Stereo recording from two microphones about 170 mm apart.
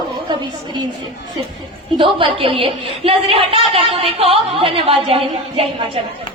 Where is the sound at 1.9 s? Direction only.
30° right (ahead or behind).